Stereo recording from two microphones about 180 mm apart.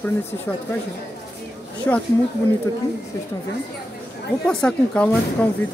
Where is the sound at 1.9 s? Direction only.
10° left (ahead or behind).